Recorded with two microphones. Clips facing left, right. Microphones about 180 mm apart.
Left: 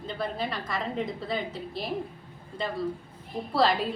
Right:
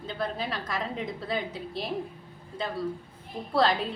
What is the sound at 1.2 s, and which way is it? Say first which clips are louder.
Speech: even; centre (ahead or behind).